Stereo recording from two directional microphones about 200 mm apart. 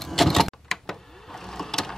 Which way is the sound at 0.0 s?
Centre (ahead or behind).